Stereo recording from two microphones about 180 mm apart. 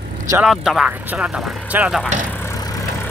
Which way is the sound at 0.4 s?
5° right (ahead or behind).